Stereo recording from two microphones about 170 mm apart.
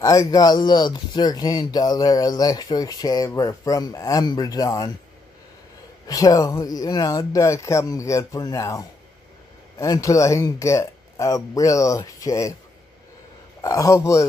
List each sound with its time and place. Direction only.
0.0 s speech: 20° left (ahead or behind)
6.0 s speech: 20° left (ahead or behind)
13.6 s speech: 20° left (ahead or behind)